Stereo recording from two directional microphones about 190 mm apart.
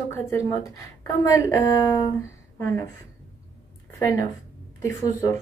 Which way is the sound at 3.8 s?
15° left (ahead or behind).